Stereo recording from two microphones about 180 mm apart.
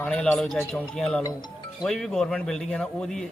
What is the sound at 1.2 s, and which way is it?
Speech, 20° left (ahead or behind).